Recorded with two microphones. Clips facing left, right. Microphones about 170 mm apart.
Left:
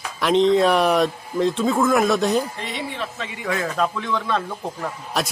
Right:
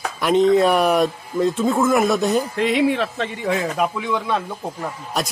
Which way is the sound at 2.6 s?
80° right.